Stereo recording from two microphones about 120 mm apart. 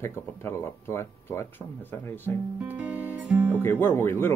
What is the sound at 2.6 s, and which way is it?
Music, 15° right (ahead or behind).